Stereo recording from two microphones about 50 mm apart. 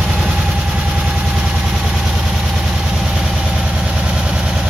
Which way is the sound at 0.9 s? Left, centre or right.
Centre.